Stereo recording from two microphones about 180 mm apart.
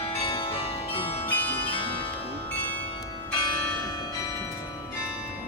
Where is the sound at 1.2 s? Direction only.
10° left (ahead or behind).